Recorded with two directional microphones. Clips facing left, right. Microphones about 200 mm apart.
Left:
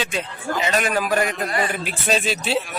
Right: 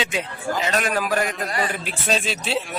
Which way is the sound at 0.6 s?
Centre (ahead or behind).